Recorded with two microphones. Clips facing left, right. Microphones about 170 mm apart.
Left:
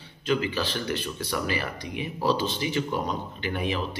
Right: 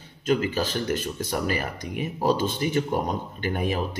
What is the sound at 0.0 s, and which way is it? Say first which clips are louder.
Speech: right 2 dB; 45° right (ahead or behind).